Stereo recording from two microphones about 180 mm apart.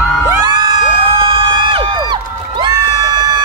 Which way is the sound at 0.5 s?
25° right (ahead or behind).